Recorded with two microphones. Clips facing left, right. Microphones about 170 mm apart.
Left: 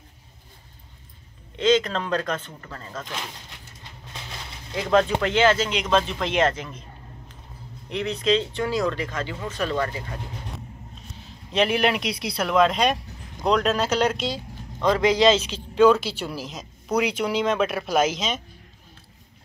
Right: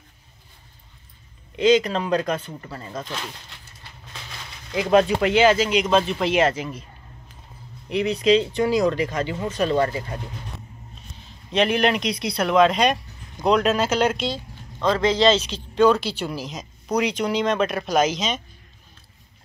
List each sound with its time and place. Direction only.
1.6 s speech: 10° right (ahead or behind)
4.7 s speech: 15° right (ahead or behind)
7.9 s speech: 10° right (ahead or behind); by 10.1 s 30° right (ahead or behind)
11.5 s speech: 5° left (ahead or behind)
14.3 s speech: 15° left (ahead or behind)